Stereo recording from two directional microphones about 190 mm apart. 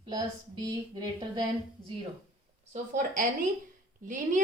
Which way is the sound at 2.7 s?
40° right (ahead or behind).